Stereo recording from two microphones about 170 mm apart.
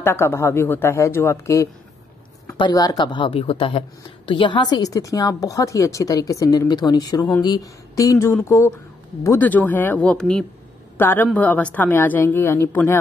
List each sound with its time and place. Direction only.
0.0 s a man's voice: 15° left (ahead or behind)